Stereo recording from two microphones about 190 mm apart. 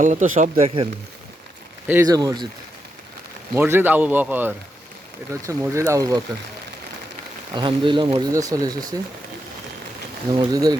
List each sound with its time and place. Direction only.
0.0 s speech: 40° right (ahead or behind)
1.9 s speech: 15° right (ahead or behind)
3.5 s a man's voice: 10° right (ahead or behind)
7.5 s speech: 25° right (ahead or behind)
10.3 s speech: 20° right (ahead or behind)